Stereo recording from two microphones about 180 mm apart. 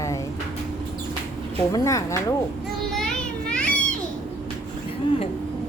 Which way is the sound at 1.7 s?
15° left (ahead or behind).